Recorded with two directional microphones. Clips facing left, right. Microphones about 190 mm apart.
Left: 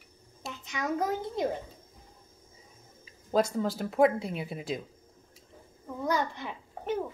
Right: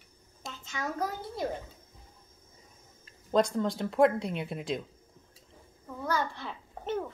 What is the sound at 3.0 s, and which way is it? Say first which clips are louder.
Speech: right 1 dB; 5° left (ahead or behind).